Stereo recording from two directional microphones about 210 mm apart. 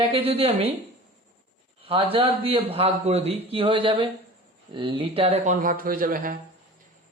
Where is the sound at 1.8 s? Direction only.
25° right (ahead or behind).